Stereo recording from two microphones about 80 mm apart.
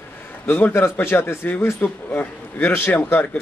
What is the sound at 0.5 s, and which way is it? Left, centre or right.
A man's voice, left.